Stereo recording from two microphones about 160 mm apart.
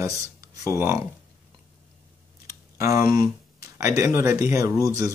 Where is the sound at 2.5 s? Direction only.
20° right (ahead or behind).